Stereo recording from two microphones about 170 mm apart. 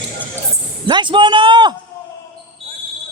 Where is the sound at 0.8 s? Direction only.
25° right (ahead or behind).